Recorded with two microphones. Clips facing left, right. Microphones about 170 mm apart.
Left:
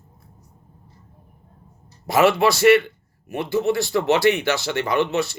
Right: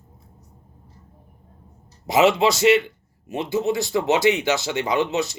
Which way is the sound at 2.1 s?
20° right (ahead or behind).